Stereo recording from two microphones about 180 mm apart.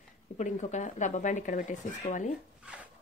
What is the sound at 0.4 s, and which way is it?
Speech, 40° left (ahead or behind).